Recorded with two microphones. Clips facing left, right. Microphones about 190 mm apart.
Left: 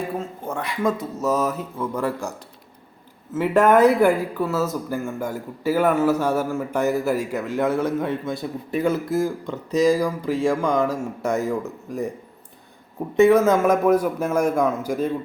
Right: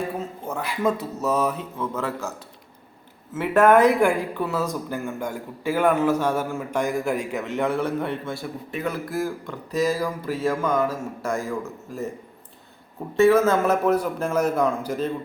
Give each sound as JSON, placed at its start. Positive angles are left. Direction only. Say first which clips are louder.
{"t": 0.4, "sound": "speech", "louder": "even", "side_deg": 0}
{"t": 3.3, "sound": "a man's voice", "louder": "even", "side_deg": 10}
{"t": 8.7, "sound": "a man's voice", "louder": "left 7 dB", "side_deg": 30}
{"t": 9.0, "sound": "speech", "louder": "left 4 dB", "side_deg": 0}
{"t": 9.5, "sound": "a man's voice", "louder": "left 6 dB", "side_deg": 15}
{"t": 13.1, "sound": "a man's voice", "louder": "left 2 dB", "side_deg": 15}